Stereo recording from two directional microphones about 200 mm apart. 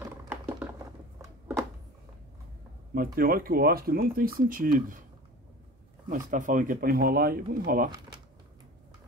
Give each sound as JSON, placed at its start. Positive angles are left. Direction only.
{"t": 0.2, "sound": "a sound", "side_deg": -10}
{"t": 2.9, "sound": "speech", "side_deg": -45}
{"t": 6.0, "sound": "speech", "side_deg": -40}